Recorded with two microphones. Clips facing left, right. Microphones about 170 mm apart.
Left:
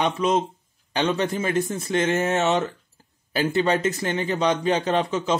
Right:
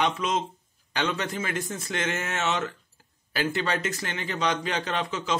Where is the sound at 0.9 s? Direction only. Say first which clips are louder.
Left 6 dB; 25° left (ahead or behind).